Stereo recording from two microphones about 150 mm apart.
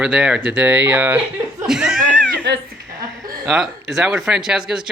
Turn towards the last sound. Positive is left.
turn(degrees=-5)  # may be behind; listen again after turning